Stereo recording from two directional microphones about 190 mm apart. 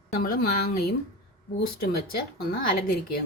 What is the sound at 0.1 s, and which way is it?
Speech, 50° left (ahead or behind).